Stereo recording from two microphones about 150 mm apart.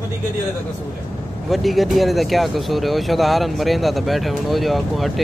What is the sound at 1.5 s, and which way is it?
Speech, centre (ahead or behind).